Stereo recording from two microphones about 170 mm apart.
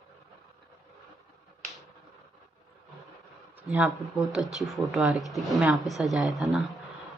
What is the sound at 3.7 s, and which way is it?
Speech, 5° right (ahead or behind).